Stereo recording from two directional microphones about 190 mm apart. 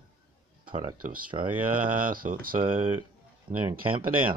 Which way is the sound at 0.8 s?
50° right (ahead or behind).